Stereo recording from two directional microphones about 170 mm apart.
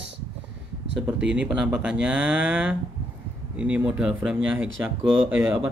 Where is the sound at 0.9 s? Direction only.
5° right (ahead or behind).